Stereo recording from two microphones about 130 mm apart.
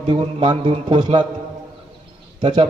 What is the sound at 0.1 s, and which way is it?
Speech, 40° right (ahead or behind).